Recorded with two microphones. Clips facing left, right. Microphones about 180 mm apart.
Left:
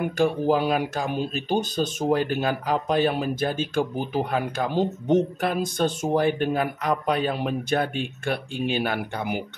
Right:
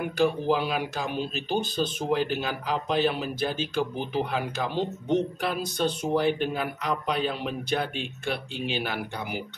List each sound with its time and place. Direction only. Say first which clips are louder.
0.2 s speech: left 2 dB; 50° left (ahead or behind)